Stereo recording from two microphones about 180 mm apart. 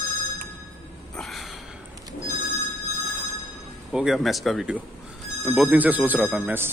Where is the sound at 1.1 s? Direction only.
Centre (ahead or behind).